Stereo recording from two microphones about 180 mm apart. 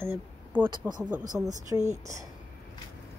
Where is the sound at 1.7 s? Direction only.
20° right (ahead or behind).